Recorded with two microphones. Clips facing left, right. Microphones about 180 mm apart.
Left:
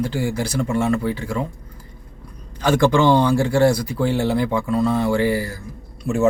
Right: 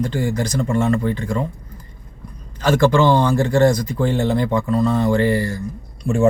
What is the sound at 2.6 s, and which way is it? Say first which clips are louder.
Speech: right 1 dB; 15° left (ahead or behind).